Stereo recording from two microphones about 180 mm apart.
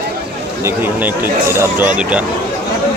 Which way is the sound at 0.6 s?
10° right (ahead or behind).